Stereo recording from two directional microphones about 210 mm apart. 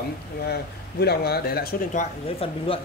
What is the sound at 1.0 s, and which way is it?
Speech, 50° left (ahead or behind).